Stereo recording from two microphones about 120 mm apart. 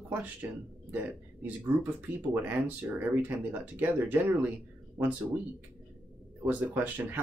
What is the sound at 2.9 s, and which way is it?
Speech, 10° right (ahead or behind).